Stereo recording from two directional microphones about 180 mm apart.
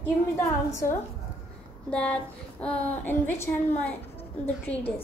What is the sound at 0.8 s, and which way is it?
Speech, 50° left (ahead or behind).